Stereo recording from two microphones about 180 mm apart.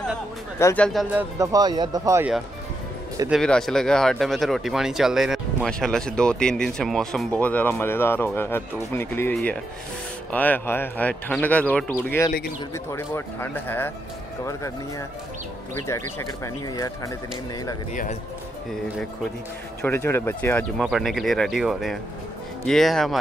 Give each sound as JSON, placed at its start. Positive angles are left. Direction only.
{"t": 0.6, "sound": "speech", "side_deg": 15}
{"t": 1.1, "sound": "speech", "side_deg": -20}
{"t": 3.3, "sound": "speech", "side_deg": 5}
{"t": 19.8, "sound": "speech", "side_deg": 15}
{"t": 20.7, "sound": "speech", "side_deg": 0}